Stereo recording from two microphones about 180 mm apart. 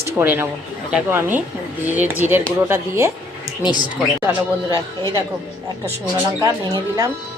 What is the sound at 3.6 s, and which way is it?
Speech, 25° left (ahead or behind).